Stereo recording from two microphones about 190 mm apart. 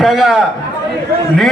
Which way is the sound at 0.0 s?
Centre (ahead or behind).